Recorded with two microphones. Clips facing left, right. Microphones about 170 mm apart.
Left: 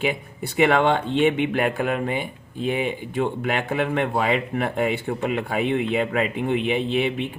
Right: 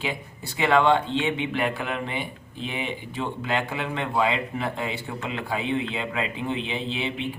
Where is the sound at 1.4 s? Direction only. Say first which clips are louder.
Left 5 dB; 50° left (ahead or behind).